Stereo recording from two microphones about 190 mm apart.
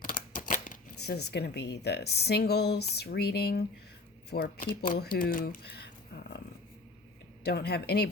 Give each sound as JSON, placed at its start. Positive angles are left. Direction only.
{"t": 0.0, "sound": "speech", "side_deg": 45}
{"t": 7.4, "sound": "speech", "side_deg": 60}